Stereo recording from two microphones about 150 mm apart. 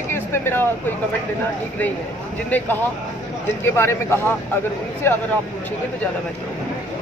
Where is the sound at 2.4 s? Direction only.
10° left (ahead or behind).